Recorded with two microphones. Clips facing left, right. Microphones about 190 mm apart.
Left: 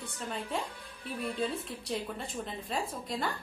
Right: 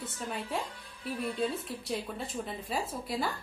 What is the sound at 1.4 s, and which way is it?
A woman's voice, centre (ahead or behind).